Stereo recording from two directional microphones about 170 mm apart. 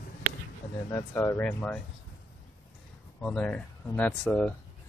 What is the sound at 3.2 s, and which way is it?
Speech, 5° left (ahead or behind).